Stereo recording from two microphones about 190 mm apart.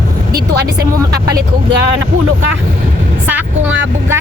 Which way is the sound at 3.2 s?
10° right (ahead or behind).